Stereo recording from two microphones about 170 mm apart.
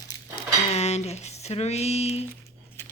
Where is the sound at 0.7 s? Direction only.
40° left (ahead or behind).